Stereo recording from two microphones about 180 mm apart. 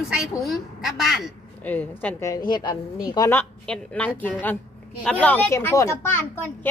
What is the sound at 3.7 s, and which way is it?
A woman's voice, 5° left (ahead or behind).